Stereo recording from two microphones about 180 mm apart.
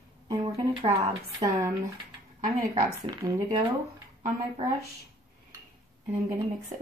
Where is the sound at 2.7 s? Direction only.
20° right (ahead or behind).